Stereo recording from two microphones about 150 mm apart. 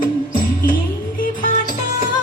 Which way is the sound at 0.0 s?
65° left (ahead or behind).